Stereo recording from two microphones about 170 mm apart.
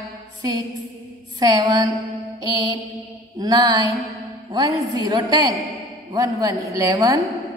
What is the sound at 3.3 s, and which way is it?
A woman's voice, 20° right (ahead or behind).